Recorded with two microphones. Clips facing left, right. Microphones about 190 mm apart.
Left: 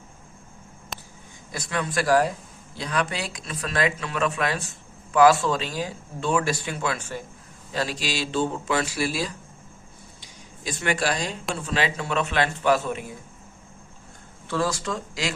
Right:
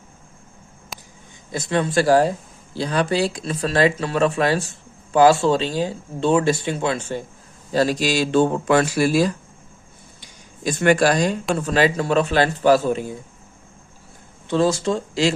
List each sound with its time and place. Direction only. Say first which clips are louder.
0.9 s a sound: even; centre (ahead or behind)
1.5 s speech: right 7 dB; 25° right (ahead or behind)
7.7 s speech: right 9 dB; 40° right (ahead or behind)
10.2 s a sound: right 2 dB; 50° right (ahead or behind)
11.5 s speech: right 7 dB; 45° right (ahead or behind)
14.4 s speech: right 7 dB; 25° right (ahead or behind)